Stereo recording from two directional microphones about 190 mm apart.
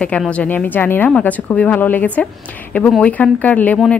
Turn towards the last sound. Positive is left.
turn(degrees=5)  # may be behind; listen again after turning